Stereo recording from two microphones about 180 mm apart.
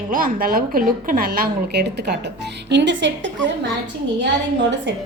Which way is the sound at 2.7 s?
80° right.